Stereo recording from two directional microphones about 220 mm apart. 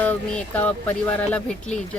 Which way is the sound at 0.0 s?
5° left (ahead or behind).